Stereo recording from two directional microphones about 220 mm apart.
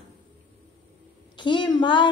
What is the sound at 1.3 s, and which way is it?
Speech, 20° left (ahead or behind).